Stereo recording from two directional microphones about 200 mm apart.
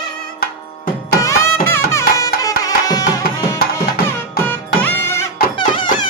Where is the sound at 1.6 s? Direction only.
15° left (ahead or behind).